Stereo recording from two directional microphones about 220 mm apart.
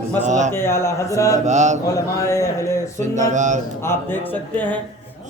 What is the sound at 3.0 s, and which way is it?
Mantra, 35° right (ahead or behind).